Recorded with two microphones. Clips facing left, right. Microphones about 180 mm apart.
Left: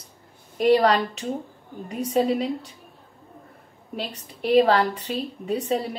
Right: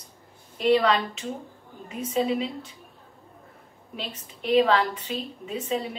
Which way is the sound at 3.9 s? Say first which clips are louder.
Left 4 dB; 40° left (ahead or behind).